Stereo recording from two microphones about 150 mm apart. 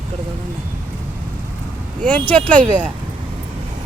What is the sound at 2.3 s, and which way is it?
Speech, 10° left (ahead or behind).